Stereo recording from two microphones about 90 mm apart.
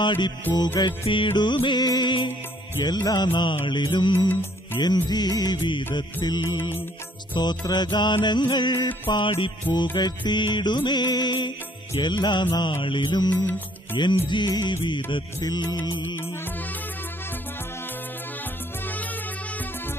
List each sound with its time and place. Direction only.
0.0 s music: 60° left (ahead or behind)
1.0 s music: 70° left (ahead or behind)
2.8 s music: 50° left (ahead or behind); by 9.8 s 65° left (ahead or behind)
9.9 s music: 55° left (ahead or behind)